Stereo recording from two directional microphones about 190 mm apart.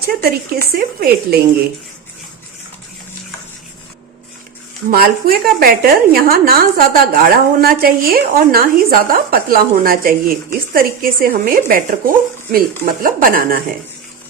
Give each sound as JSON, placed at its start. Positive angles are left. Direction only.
{"t": 0.0, "sound": "a woman's voice", "side_deg": -55}
{"t": 4.9, "sound": "speech", "side_deg": -50}